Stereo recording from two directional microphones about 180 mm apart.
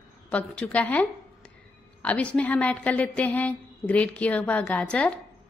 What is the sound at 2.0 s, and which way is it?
A woman's voice, 5° left (ahead or behind).